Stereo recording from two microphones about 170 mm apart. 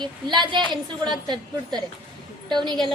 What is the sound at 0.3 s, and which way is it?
A woman's voice, 25° right (ahead or behind).